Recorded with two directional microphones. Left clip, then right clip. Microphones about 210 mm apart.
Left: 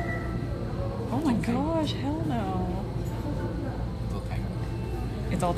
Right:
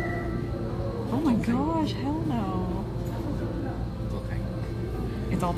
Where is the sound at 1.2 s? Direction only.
Centre (ahead or behind).